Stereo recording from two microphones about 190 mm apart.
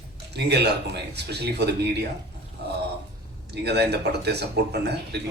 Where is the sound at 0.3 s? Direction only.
60° right (ahead or behind).